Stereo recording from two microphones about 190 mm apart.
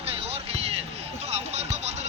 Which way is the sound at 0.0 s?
30° right (ahead or behind).